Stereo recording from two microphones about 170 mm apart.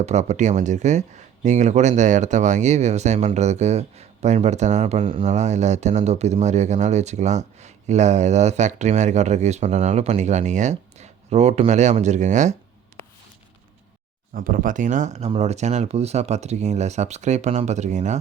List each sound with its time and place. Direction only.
0.0 s speech: 40° right (ahead or behind)
14.3 s speech: 55° right (ahead or behind)